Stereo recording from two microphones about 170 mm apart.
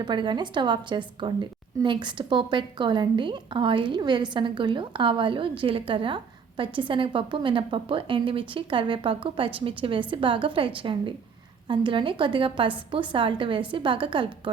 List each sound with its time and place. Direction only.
0.0 s a woman's voice: 25° right (ahead or behind)